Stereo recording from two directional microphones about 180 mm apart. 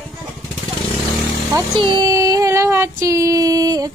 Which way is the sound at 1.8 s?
25° right (ahead or behind).